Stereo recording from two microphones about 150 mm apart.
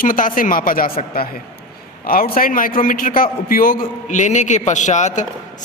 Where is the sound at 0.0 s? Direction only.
65° left (ahead or behind).